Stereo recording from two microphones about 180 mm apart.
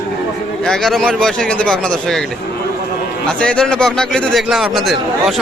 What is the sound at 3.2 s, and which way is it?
Speech, 5° left (ahead or behind).